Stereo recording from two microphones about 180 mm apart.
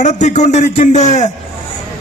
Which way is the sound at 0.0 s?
40° left (ahead or behind).